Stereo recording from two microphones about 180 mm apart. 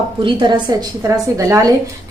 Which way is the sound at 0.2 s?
25° right (ahead or behind).